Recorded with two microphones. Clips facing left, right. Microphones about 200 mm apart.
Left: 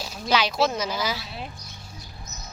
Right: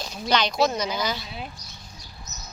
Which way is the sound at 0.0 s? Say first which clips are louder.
Even; 5° left (ahead or behind).